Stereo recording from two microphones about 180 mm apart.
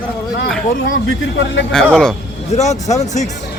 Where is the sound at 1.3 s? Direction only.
85° left.